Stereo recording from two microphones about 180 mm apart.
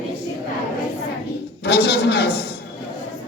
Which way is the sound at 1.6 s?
65° left (ahead or behind).